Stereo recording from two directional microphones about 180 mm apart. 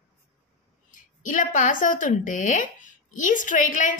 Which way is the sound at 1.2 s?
45° left (ahead or behind).